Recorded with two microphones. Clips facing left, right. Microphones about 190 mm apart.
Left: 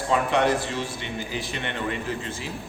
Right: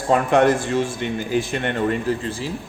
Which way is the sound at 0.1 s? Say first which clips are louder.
Right 6 dB; 50° right (ahead or behind).